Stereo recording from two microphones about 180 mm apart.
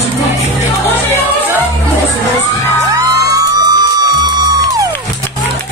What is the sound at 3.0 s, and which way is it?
Music, 20° right (ahead or behind).